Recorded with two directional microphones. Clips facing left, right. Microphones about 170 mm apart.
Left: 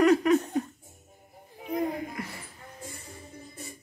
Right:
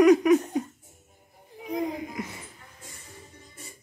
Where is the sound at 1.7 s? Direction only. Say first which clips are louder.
Even; 10° right (ahead or behind).